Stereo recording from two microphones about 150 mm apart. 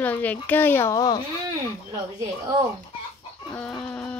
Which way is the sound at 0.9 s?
25° left (ahead or behind).